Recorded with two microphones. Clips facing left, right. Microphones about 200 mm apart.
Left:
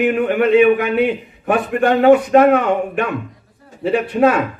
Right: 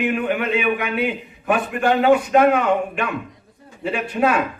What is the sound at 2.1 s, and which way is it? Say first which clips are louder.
A man's voice: left 5 dB; 40° left (ahead or behind).